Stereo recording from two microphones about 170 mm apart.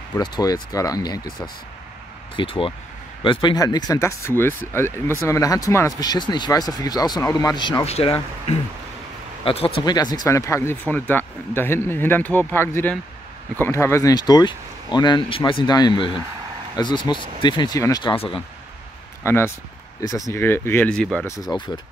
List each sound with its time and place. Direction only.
0.2 s speech: 20° left (ahead or behind)
2.3 s speech: 30° left (ahead or behind)
18.1 s speech: 35° left (ahead or behind)
19.2 s speech: 15° left (ahead or behind)
21.3 s speech: 20° left (ahead or behind)